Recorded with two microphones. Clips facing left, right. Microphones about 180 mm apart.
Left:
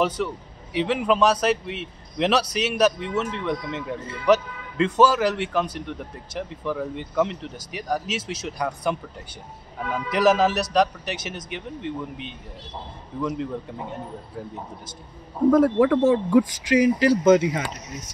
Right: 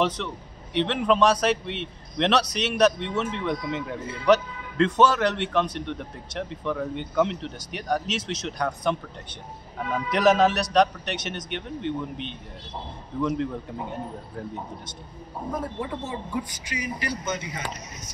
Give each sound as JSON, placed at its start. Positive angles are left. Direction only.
{"t": 0.2, "sound": "a man's voice", "side_deg": 5}
{"t": 15.5, "sound": "speech", "side_deg": 90}